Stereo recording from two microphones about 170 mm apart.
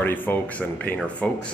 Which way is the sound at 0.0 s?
10° left (ahead or behind).